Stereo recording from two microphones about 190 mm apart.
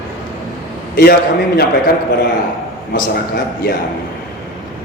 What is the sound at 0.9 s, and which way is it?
Speech, 55° left (ahead or behind).